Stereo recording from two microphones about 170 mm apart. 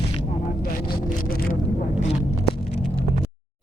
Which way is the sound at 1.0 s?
55° left (ahead or behind).